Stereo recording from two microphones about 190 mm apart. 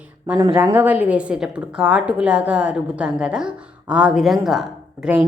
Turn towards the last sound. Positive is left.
turn(degrees=-5)  # may be behind; listen again after turning